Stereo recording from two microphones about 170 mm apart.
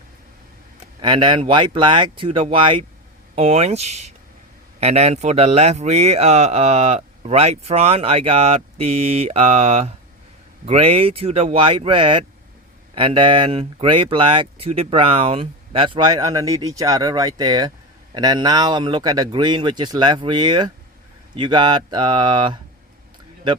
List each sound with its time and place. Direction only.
1.0 s speech: 30° right (ahead or behind)